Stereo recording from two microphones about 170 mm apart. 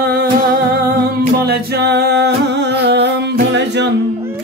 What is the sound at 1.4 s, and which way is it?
Music, 75° right (ahead or behind).